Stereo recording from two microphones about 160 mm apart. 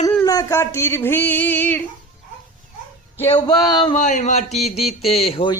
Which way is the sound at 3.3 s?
25° left (ahead or behind).